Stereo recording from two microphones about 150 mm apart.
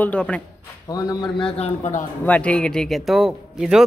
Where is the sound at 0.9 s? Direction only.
25° left (ahead or behind).